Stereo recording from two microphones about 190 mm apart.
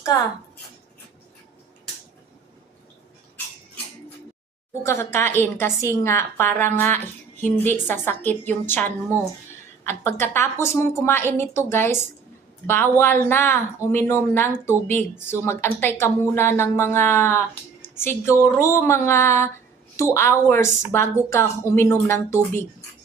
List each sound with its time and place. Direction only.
4.8 s speech: 15° left (ahead or behind)